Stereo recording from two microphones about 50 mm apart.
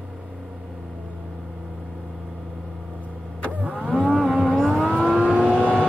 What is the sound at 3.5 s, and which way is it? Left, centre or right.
Car, right.